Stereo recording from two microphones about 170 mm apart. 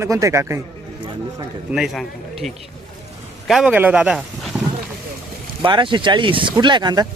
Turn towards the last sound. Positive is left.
turn(degrees=-25)  # may be behind; listen again after turning